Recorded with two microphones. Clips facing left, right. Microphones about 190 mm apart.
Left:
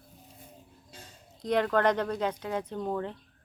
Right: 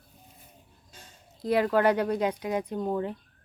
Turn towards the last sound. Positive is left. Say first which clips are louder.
# right 3 dB
turn(degrees=-10)  # may be behind; listen again after turning